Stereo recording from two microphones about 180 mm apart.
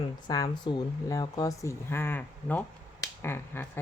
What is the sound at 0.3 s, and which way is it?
A woman's voice, 25° left (ahead or behind).